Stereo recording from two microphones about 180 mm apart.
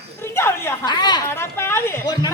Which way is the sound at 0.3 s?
15° left (ahead or behind).